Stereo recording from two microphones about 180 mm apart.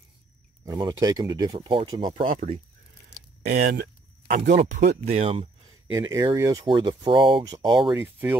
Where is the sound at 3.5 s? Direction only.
55° right (ahead or behind).